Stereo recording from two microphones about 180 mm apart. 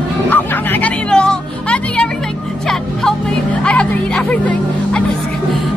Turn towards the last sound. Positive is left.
turn(degrees=5)  # may be behind; listen again after turning